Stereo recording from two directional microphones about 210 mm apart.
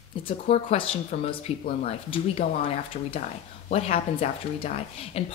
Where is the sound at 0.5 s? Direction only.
30° left (ahead or behind).